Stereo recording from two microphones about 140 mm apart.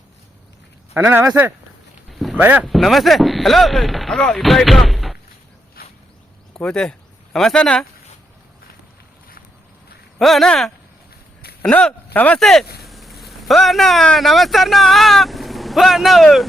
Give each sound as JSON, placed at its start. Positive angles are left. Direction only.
{"t": 0.9, "sound": "speech", "side_deg": -15}
{"t": 2.0, "sound": "a sound", "side_deg": 0}
{"t": 2.4, "sound": "speech", "side_deg": -10}
{"t": 2.6, "sound": "speech", "side_deg": 0}
{"t": 5.8, "sound": "a sound", "side_deg": 90}
{"t": 6.5, "sound": "speech", "side_deg": 5}
{"t": 10.2, "sound": "speech", "side_deg": 0}